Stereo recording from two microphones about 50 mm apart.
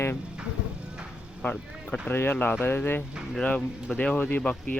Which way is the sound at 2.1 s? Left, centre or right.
Left.